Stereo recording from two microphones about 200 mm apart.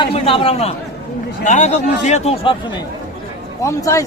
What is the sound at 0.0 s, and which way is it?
A man's voice, 25° left (ahead or behind).